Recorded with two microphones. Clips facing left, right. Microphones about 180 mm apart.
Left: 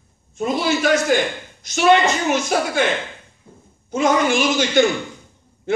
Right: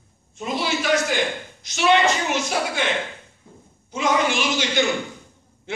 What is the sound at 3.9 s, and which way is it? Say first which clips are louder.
Speech: left 4 dB; 45° left (ahead or behind).